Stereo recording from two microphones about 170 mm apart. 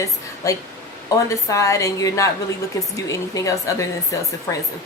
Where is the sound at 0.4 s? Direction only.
20° left (ahead or behind).